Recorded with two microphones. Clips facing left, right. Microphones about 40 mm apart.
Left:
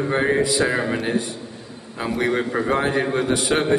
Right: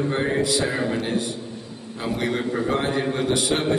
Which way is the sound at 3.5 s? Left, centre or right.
Left.